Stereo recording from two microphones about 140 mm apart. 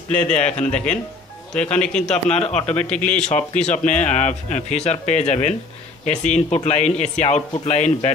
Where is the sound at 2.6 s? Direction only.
10° left (ahead or behind).